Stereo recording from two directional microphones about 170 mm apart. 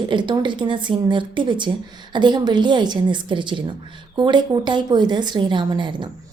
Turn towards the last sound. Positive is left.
turn(degrees=-25)  # may be behind; listen again after turning